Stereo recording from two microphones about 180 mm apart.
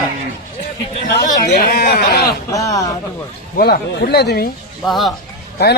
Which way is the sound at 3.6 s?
55° left (ahead or behind).